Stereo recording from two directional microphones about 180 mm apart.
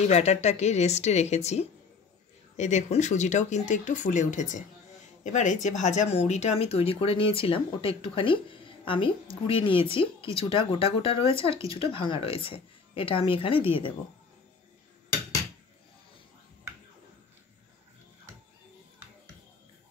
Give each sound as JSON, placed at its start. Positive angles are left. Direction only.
{"t": 0.1, "sound": "speech", "side_deg": 40}